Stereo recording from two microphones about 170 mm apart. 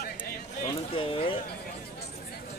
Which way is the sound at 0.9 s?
30° left (ahead or behind).